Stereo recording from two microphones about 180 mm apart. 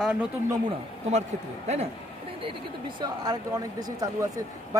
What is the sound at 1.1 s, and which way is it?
Speech, 40° right (ahead or behind).